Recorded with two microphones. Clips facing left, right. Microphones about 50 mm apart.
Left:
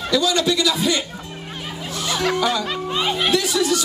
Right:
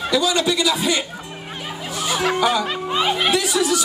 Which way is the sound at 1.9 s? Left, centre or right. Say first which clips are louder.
Right 1 dB; centre.